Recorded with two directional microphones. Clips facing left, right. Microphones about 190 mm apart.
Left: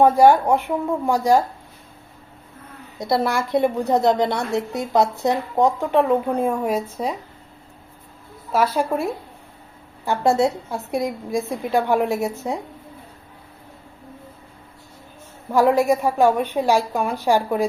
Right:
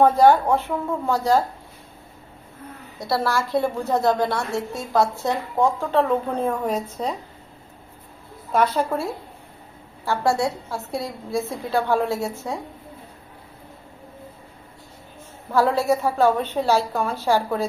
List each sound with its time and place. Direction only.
0.0 s a woman's voice: 10° left (ahead or behind)
3.0 s a woman's voice: 20° left (ahead or behind)
8.5 s a woman's voice: 10° left (ahead or behind)
10.1 s a woman's voice: 20° left (ahead or behind)
15.5 s a woman's voice: 15° left (ahead or behind)